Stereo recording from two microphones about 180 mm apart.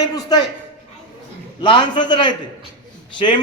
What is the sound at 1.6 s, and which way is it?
Speech, 25° left (ahead or behind).